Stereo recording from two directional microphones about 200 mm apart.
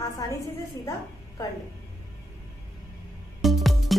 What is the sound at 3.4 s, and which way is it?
Music, centre (ahead or behind).